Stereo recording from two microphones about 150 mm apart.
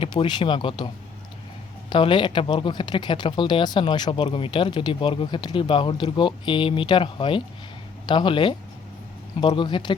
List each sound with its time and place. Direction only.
0.0 s speech: 35° left (ahead or behind)
1.9 s speech: 35° left (ahead or behind)